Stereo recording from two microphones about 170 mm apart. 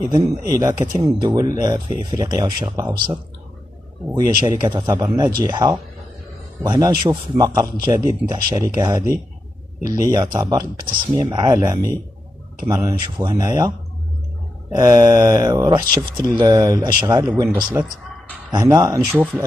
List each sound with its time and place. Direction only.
0.0 s speech: 20° right (ahead or behind)
4.6 s speech: 25° right (ahead or behind)
14.8 s speech: 20° right (ahead or behind)